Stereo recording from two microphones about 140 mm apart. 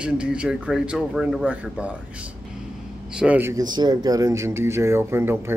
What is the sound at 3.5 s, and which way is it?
Speech, 30° right (ahead or behind).